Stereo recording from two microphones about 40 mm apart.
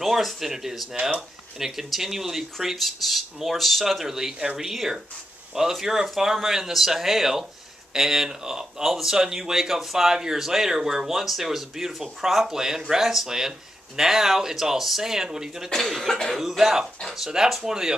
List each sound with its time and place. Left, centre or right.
0.0 s speech: centre
15.7 s speech: centre